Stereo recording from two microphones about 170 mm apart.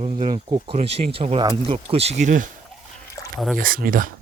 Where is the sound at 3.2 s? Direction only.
15° left (ahead or behind).